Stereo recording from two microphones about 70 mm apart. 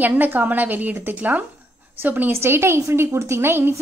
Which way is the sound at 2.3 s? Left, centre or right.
Right.